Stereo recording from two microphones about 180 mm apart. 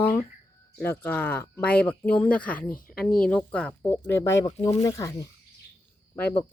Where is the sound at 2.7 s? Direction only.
50° left (ahead or behind).